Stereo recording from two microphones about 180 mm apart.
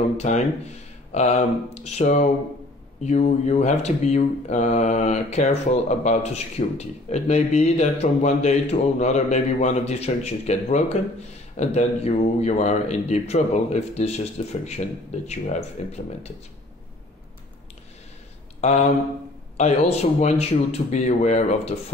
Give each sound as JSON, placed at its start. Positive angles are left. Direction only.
{"t": 0.2, "sound": "speech", "side_deg": 40}
{"t": 19.5, "sound": "speech", "side_deg": 35}